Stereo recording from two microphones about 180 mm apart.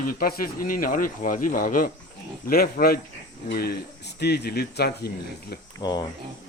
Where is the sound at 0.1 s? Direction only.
55° left (ahead or behind).